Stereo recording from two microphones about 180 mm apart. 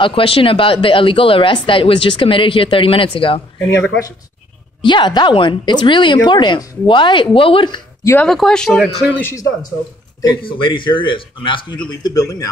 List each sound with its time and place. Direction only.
0.0 s speech: 30° left (ahead or behind)
4.8 s speech: 25° left (ahead or behind)
8.1 s speech: 5° left (ahead or behind)
9.3 s speech: 20° left (ahead or behind)